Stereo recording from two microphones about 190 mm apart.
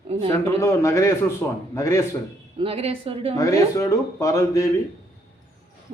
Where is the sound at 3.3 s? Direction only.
15° left (ahead or behind).